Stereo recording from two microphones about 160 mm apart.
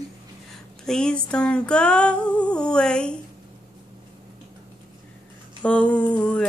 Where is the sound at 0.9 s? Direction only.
5° left (ahead or behind).